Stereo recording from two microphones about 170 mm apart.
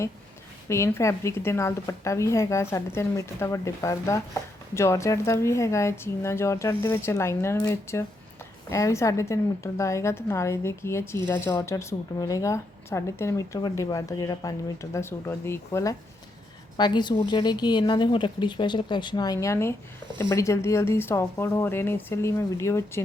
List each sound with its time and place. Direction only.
0.7 s a woman's voice: 15° left (ahead or behind)